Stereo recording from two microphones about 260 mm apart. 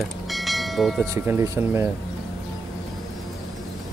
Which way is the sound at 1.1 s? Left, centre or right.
Centre.